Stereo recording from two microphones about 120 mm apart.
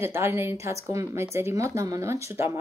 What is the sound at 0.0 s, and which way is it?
A woman's voice, 20° right (ahead or behind).